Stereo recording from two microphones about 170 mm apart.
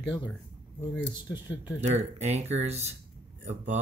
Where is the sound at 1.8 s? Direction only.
40° right (ahead or behind).